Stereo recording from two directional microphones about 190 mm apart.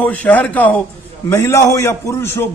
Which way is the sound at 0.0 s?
10° left (ahead or behind).